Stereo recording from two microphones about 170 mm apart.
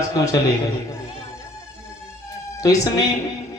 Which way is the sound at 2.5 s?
20° left (ahead or behind).